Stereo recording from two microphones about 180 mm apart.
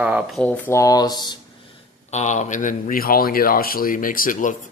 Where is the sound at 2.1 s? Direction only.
40° left (ahead or behind).